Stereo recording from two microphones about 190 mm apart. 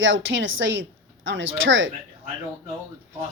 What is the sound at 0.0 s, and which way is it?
A woman's voice, 80° right.